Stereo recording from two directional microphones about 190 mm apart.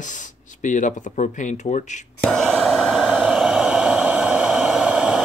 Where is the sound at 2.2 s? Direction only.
5° left (ahead or behind).